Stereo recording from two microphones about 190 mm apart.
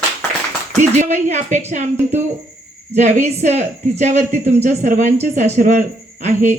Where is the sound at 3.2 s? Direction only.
35° right (ahead or behind).